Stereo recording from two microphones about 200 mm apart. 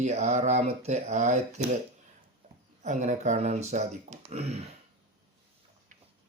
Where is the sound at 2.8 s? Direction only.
35° right (ahead or behind).